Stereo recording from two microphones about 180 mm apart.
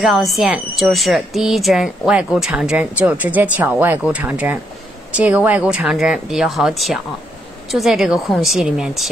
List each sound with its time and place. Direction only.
0.0 s speech: centre (ahead or behind)